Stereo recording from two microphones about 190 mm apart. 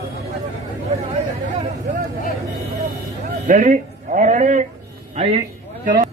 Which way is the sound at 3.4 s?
40° right (ahead or behind).